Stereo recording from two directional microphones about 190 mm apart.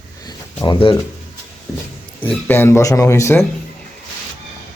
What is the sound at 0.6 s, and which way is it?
Speech, 25° left (ahead or behind).